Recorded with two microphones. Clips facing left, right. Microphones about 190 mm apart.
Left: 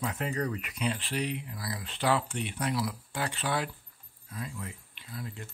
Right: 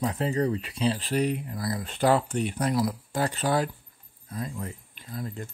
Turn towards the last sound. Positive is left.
turn(degrees=-45)  # may be behind; listen again after turning